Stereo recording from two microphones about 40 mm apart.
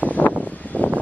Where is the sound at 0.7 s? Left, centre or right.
Left.